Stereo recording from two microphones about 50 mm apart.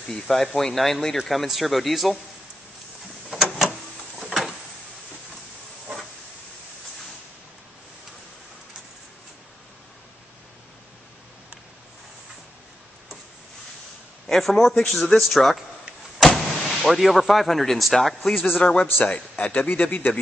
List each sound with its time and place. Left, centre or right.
0.1 s speech: centre
4.2 s a sound: centre
14.2 s speech: centre
18.6 s a man's voice: centre
19.3 s speech: left